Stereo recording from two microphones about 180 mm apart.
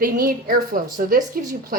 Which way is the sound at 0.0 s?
50° right (ahead or behind).